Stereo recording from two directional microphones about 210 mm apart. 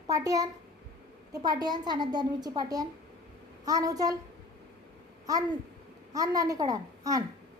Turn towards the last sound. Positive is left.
turn(degrees=-15)  # may be behind; listen again after turning